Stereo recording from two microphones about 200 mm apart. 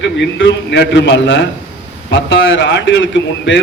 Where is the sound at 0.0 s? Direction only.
65° left (ahead or behind).